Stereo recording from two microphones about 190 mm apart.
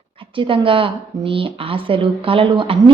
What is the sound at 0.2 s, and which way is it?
A woman's voice, 25° right (ahead or behind).